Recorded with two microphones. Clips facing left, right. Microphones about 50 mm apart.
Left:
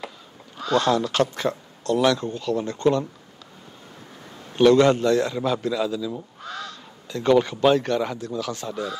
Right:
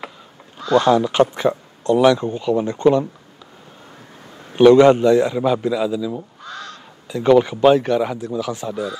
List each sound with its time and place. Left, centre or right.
0.7 s speech: centre
4.6 s speech: centre